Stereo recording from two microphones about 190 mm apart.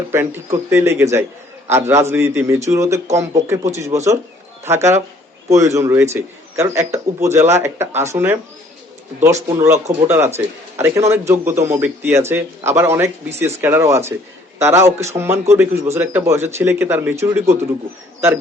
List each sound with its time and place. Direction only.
0.1 s a man's voice: 10° right (ahead or behind)